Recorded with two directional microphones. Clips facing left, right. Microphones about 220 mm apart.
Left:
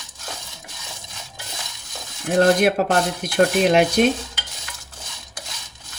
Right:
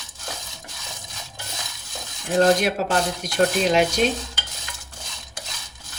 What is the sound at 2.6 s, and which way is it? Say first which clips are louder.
Speech: left 5 dB; 55° left (ahead or behind).